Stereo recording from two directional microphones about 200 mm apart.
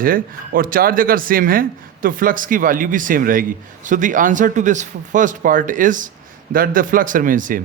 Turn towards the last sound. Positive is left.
turn(degrees=-40)  # may be behind; listen again after turning